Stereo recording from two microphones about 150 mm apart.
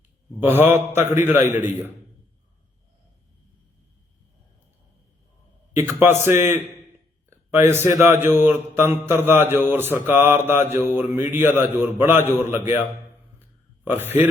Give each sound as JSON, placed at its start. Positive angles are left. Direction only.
{"t": 0.3, "sound": "mantra", "side_deg": -15}
{"t": 5.7, "sound": "mantra", "side_deg": -15}
{"t": 7.3, "sound": "speech", "side_deg": -15}
{"t": 8.4, "sound": "mantra", "side_deg": -15}
{"t": 13.8, "sound": "mantra", "side_deg": -15}